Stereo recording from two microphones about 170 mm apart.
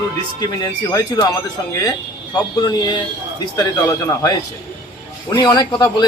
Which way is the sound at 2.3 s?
25° left (ahead or behind).